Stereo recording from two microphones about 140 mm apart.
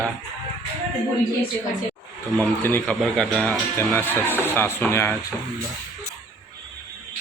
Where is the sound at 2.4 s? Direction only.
10° left (ahead or behind).